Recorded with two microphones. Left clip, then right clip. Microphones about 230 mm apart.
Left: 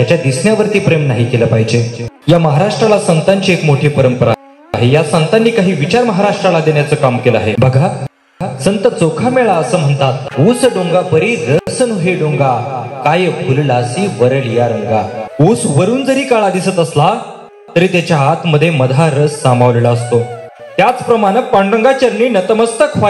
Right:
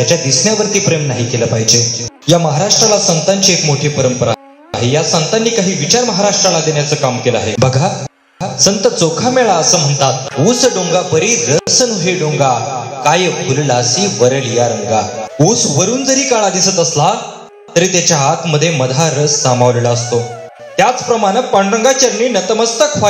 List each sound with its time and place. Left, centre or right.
0.0 s a man's voice: left